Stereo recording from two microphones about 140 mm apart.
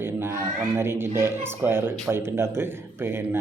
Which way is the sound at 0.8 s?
15° right (ahead or behind).